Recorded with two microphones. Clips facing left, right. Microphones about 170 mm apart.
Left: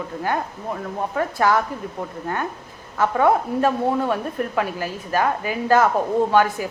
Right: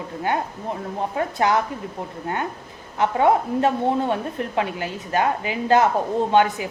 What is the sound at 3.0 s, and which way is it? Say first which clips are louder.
A woman's voice: even; 20° right (ahead or behind).